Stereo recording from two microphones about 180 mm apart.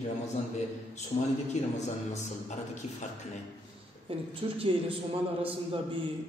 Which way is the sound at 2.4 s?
40° left (ahead or behind).